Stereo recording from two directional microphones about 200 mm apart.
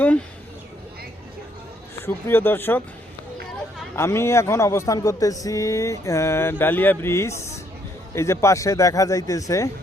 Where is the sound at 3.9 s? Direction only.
15° left (ahead or behind).